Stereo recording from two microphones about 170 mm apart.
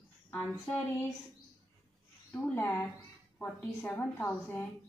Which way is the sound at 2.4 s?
10° left (ahead or behind).